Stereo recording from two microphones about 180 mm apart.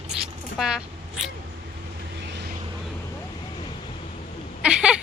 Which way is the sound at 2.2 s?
70° right (ahead or behind).